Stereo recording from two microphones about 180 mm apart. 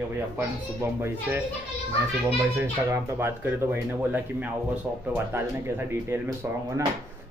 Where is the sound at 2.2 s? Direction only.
15° right (ahead or behind).